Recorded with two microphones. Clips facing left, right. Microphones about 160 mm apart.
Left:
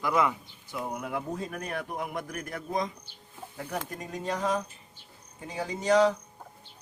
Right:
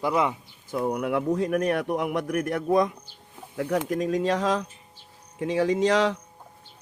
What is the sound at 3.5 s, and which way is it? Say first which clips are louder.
Speech: right 11 dB; 80° right.